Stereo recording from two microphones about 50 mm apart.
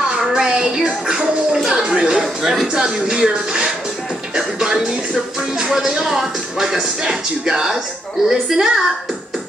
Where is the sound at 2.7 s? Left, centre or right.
Centre.